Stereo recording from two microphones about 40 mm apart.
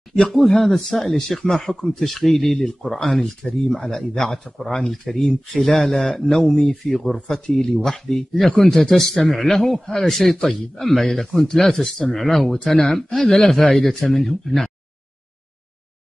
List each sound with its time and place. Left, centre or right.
0.5 s speech: centre